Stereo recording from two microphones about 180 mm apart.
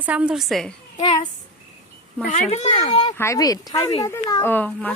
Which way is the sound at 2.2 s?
40° left (ahead or behind).